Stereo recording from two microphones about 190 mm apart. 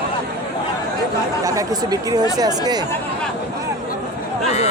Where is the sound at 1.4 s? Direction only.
20° right (ahead or behind).